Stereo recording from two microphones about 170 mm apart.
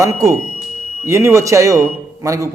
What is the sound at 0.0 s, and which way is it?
A man's voice, 20° right (ahead or behind).